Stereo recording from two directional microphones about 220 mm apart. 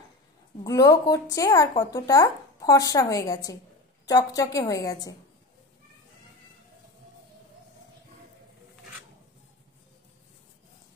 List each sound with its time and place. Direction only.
0.7 s speech: 15° left (ahead or behind)